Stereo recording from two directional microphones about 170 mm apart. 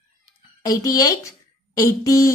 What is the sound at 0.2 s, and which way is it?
A woman's voice, 20° left (ahead or behind).